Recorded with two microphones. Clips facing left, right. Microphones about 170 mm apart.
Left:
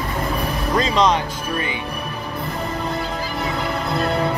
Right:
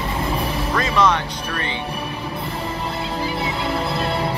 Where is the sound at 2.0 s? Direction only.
30° right (ahead or behind).